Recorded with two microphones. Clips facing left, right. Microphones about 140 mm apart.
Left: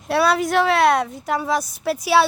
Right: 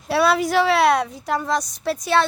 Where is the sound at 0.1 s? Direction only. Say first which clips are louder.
Even; centre (ahead or behind).